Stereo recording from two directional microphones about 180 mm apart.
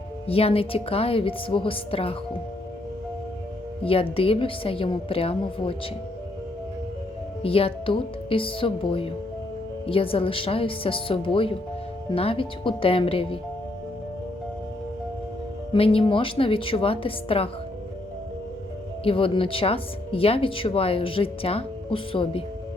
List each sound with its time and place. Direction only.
0.3 s speech: 30° left (ahead or behind)
3.8 s speech: 30° left (ahead or behind)
7.4 s speech: 30° left (ahead or behind)
15.7 s speech: 30° left (ahead or behind)
19.0 s speech: 30° left (ahead or behind)